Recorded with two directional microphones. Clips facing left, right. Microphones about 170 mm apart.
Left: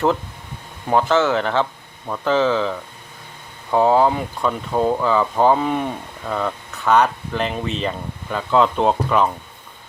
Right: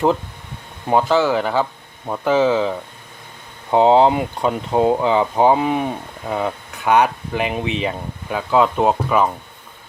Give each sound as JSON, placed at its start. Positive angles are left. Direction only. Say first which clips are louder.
{"t": 0.9, "sound": "speech", "louder": "right 1 dB", "side_deg": -15}